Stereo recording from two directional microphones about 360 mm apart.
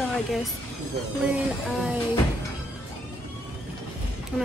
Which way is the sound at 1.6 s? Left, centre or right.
Centre.